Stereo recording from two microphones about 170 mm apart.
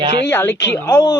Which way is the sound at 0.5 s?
90° left.